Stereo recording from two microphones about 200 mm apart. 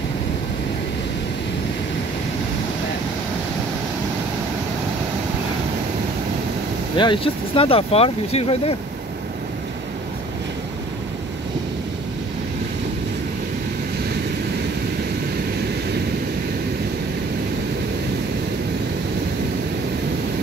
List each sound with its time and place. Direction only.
7.0 s speech: 25° left (ahead or behind)